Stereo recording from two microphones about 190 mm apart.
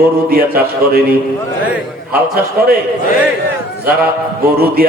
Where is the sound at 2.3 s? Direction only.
55° right (ahead or behind).